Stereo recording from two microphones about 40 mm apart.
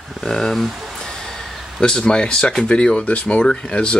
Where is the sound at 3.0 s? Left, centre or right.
Left.